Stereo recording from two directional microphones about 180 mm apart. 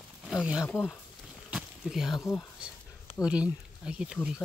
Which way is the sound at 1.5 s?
5° right (ahead or behind).